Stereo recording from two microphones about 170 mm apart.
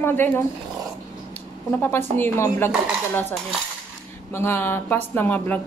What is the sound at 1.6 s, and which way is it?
A woman's voice, 10° left (ahead or behind).